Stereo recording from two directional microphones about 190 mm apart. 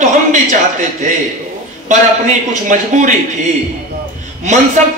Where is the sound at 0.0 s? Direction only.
40° right (ahead or behind).